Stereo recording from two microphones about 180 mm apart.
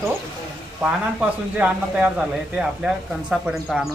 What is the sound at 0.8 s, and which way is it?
A man's voice, 5° right (ahead or behind).